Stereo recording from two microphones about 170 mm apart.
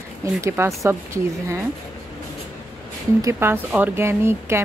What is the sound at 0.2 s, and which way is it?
Speech, 15° right (ahead or behind).